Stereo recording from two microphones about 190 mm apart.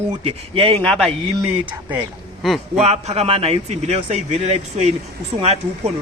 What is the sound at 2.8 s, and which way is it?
A man's voice, 35° right (ahead or behind).